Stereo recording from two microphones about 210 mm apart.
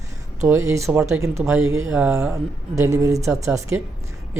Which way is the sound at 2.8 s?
15° right (ahead or behind).